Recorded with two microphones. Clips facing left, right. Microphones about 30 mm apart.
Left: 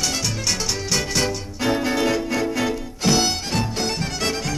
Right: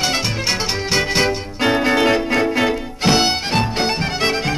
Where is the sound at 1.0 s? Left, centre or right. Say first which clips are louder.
Right 7 dB; right.